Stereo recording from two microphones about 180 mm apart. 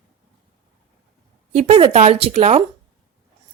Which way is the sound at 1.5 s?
35° right (ahead or behind).